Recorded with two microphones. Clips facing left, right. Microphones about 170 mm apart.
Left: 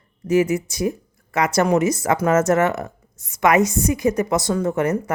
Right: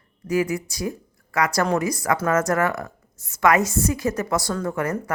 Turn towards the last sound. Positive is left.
turn(degrees=20)  # may be behind; listen again after turning